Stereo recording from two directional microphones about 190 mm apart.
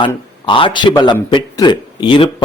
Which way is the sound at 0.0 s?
25° left (ahead or behind).